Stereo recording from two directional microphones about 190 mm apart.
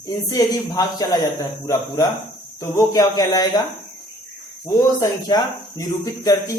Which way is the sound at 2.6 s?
15° left (ahead or behind).